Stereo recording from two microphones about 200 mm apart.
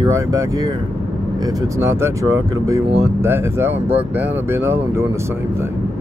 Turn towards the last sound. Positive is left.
turn(degrees=-15)  # may be behind; listen again after turning